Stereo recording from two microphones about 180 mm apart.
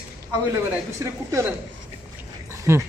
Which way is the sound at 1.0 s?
15° right (ahead or behind).